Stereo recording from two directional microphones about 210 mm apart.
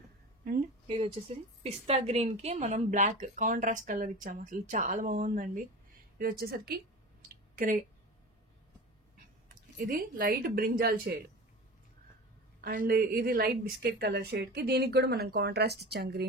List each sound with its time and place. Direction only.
0.8 s a woman's voice: 25° right (ahead or behind)
6.1 s a sound: 45° right (ahead or behind)
9.8 s a woman's voice: 45° right (ahead or behind)
12.6 s a woman's voice: 45° right (ahead or behind)